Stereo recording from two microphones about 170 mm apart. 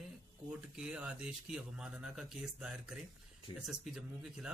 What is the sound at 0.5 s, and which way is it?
Speech, 5° right (ahead or behind).